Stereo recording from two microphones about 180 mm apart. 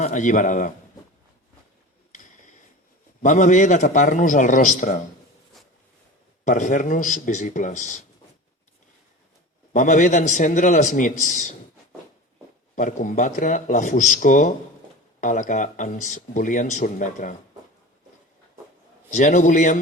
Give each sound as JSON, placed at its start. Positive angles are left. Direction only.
{"t": 0.0, "sound": "speech", "side_deg": 45}
{"t": 2.1, "sound": "a sound", "side_deg": 45}
{"t": 3.2, "sound": "speech", "side_deg": 45}
{"t": 6.4, "sound": "speech", "side_deg": 45}
{"t": 9.7, "sound": "speech", "side_deg": 45}
{"t": 12.7, "sound": "speech", "side_deg": 45}
{"t": 19.1, "sound": "speech", "side_deg": 45}